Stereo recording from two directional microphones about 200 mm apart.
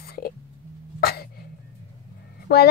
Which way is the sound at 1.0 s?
50° left (ahead or behind).